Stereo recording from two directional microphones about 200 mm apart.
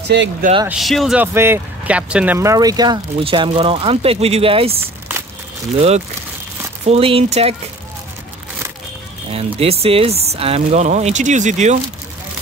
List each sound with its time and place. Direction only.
0.7 s speech: centre (ahead or behind); by 7.5 s 30° right (ahead or behind)
9.3 s speech: 30° right (ahead or behind)